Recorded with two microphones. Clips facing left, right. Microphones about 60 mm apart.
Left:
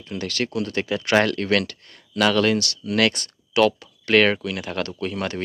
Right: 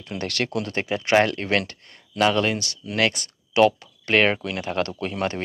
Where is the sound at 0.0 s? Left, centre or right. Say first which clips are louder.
Even; right.